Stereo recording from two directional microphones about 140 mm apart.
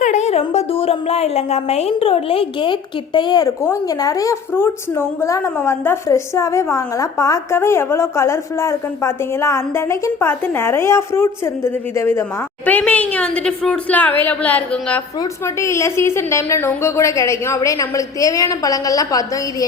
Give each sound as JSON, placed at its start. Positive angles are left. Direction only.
{"t": 0.0, "sound": "a woman's voice", "side_deg": 55}
{"t": 15.2, "sound": "a woman's voice", "side_deg": 20}